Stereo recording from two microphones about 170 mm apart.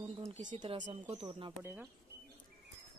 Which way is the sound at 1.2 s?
25° right (ahead or behind).